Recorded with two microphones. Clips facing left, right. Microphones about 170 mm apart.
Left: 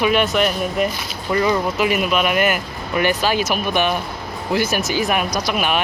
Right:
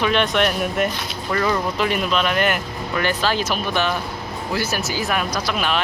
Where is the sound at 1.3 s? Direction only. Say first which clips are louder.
Left 3 dB; 15° left (ahead or behind).